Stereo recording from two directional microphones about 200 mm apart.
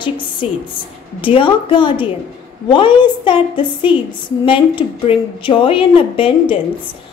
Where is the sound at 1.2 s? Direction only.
25° left (ahead or behind).